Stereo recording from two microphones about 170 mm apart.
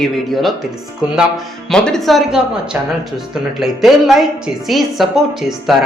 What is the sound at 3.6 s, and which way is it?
Speech, centre (ahead or behind).